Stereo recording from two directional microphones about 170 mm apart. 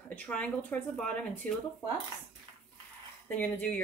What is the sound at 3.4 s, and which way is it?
Speech, 10° left (ahead or behind).